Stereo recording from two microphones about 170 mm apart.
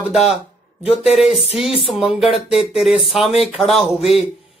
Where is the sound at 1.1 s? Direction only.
Centre (ahead or behind).